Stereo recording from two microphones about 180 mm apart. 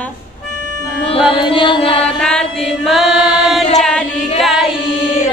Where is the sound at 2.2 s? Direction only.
5° left (ahead or behind).